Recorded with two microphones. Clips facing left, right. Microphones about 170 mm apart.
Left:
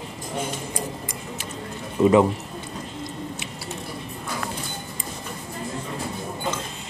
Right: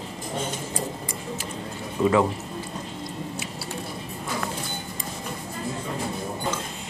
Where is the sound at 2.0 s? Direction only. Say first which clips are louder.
Left 4 dB; 15° left (ahead or behind).